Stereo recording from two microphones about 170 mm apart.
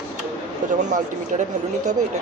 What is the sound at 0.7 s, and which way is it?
Speech, 45° right (ahead or behind).